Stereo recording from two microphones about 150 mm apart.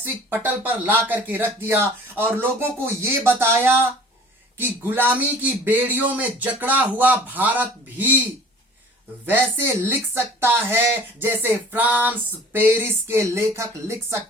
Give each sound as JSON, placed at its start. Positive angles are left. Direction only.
{"t": 0.0, "sound": "speech", "side_deg": -15}
{"t": 9.2, "sound": "speech", "side_deg": -10}